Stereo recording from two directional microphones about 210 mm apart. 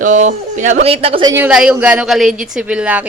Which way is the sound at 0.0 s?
35° right (ahead or behind).